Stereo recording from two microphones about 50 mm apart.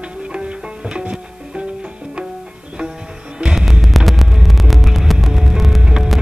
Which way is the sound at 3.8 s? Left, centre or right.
Centre.